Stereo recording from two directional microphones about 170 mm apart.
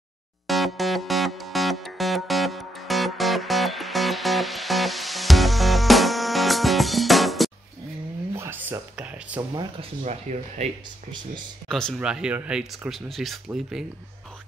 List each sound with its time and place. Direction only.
0.5 s music: centre (ahead or behind)
8.4 s a sound: 15° right (ahead or behind)
9.6 s speech: 35° right (ahead or behind)
11.7 s speech: centre (ahead or behind)